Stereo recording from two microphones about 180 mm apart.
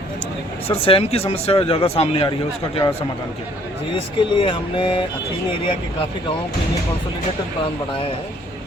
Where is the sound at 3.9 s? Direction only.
30° left (ahead or behind).